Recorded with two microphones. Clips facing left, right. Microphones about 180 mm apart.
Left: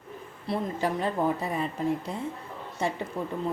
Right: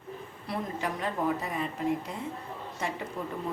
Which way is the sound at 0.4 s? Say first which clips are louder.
Left 5 dB; 30° left (ahead or behind).